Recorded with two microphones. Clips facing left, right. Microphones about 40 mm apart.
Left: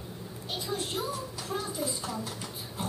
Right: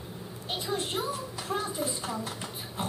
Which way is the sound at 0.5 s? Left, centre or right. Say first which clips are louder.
Right 2 dB; right.